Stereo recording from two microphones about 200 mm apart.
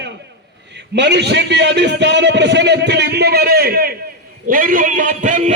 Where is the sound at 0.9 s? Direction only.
60° right (ahead or behind).